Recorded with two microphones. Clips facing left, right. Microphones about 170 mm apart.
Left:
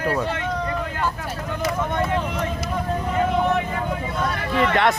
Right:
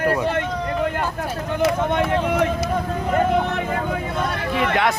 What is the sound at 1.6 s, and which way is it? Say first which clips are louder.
Speech: right 5 dB; 65° right (ahead or behind).